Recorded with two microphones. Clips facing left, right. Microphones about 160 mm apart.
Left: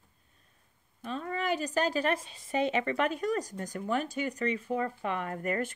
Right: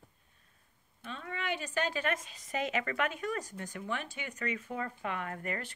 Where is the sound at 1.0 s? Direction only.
40° left (ahead or behind).